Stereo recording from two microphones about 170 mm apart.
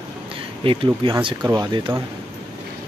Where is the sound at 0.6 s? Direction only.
30° right (ahead or behind).